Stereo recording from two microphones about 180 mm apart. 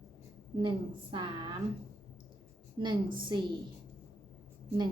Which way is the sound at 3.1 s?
25° right (ahead or behind).